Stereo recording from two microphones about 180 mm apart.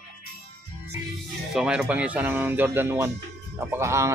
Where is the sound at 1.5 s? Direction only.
5° right (ahead or behind).